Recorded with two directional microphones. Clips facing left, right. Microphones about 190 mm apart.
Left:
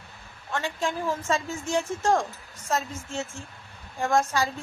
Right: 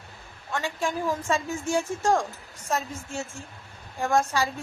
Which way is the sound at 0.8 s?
15° right (ahead or behind).